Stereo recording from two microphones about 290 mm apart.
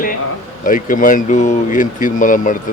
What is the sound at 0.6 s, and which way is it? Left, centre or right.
Speech, left.